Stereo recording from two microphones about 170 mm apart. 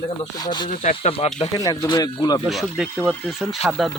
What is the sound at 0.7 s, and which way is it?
Speech, 50° left (ahead or behind).